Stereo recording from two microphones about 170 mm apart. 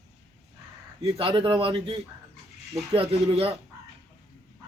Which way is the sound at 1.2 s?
30° right (ahead or behind).